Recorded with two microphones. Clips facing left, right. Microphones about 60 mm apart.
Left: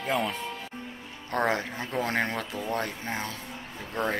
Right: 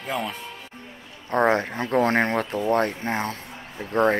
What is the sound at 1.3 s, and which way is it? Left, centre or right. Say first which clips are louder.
Speech: right 6 dB; right.